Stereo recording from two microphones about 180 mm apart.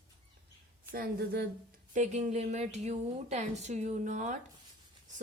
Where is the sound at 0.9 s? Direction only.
60° right (ahead or behind).